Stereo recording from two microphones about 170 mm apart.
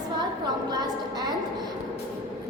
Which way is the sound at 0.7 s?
25° right (ahead or behind).